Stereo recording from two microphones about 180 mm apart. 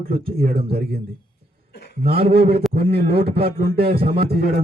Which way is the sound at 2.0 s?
60° right (ahead or behind).